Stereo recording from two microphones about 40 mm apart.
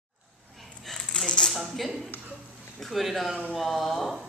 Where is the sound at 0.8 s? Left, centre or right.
Centre.